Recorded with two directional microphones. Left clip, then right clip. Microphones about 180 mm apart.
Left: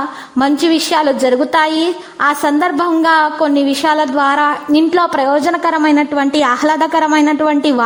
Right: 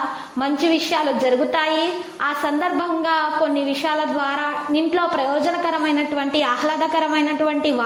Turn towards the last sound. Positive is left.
turn(degrees=45)  # may be behind; listen again after turning